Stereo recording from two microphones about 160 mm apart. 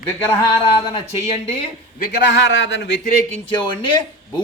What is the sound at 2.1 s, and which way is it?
Speech, 90° left.